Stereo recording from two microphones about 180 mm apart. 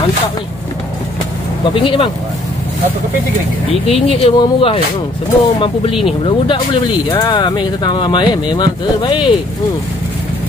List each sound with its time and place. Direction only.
1.7 s speech: 30° left (ahead or behind)
3.8 s speech: 35° left (ahead or behind)